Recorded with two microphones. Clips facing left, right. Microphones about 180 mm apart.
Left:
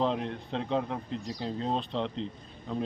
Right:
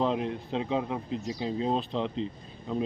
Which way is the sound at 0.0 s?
5° right (ahead or behind).